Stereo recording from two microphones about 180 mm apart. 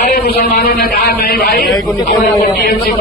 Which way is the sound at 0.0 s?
60° left (ahead or behind).